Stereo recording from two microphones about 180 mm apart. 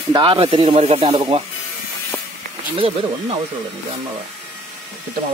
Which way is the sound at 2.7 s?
30° right (ahead or behind).